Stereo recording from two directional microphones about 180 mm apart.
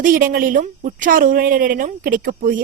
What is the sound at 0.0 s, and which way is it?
Speech, 50° right (ahead or behind).